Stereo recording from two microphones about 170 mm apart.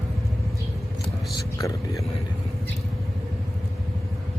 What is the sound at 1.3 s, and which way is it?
Speech, 20° left (ahead or behind).